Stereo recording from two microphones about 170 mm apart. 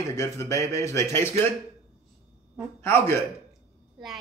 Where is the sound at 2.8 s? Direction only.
15° left (ahead or behind).